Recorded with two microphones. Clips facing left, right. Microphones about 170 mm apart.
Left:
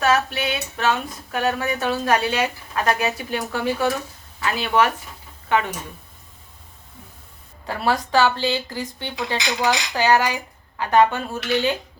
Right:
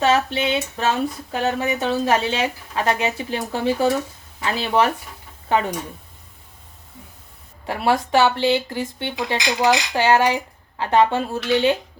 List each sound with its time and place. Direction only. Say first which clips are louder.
0.0 s speech: right 2 dB; 25° right (ahead or behind)
7.7 s speech: right 2 dB; 20° right (ahead or behind)